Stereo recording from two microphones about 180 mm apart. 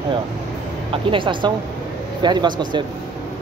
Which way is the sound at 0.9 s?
30° right (ahead or behind).